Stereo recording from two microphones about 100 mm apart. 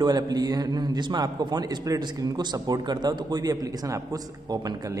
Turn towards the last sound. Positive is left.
turn(degrees=-40)  # may be behind; listen again after turning